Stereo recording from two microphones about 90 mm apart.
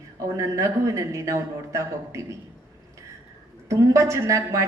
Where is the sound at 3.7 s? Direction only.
35° right (ahead or behind).